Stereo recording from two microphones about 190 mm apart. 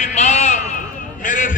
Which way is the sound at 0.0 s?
40° left (ahead or behind).